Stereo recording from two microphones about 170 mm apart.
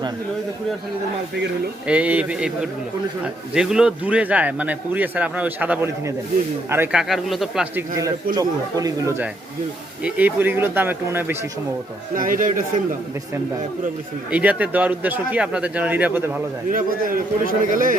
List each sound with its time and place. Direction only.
1.9 s a man's voice: 10° right (ahead or behind)
8.4 s speech: 20° right (ahead or behind)
12.1 s a man's voice: 55° right (ahead or behind)
14.3 s speech: 10° right (ahead or behind)
16.6 s a man's voice: 55° right (ahead or behind)